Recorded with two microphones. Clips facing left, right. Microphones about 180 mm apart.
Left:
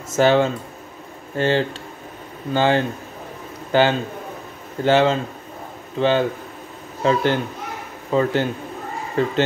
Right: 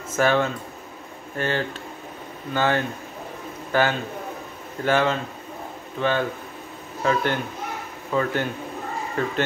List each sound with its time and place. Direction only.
0.2 s speech: 25° left (ahead or behind)